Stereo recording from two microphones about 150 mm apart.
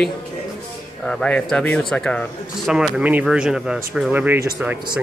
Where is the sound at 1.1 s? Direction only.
5° left (ahead or behind).